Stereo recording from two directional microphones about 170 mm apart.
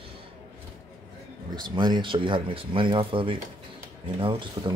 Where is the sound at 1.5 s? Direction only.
25° right (ahead or behind).